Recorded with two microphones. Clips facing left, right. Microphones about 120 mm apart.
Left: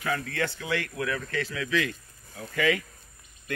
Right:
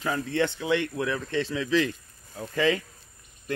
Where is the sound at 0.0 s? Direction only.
25° right (ahead or behind).